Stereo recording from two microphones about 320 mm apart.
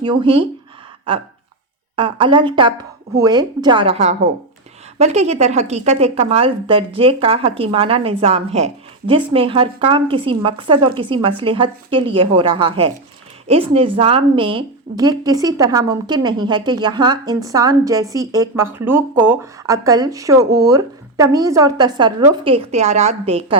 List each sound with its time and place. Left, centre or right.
0.0 s a woman's voice: centre